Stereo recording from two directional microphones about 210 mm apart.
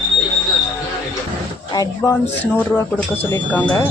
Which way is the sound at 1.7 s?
15° left (ahead or behind).